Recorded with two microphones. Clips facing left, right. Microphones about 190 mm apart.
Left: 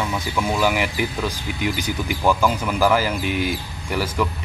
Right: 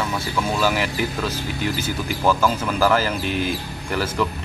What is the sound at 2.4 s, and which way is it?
Speech, 10° left (ahead or behind).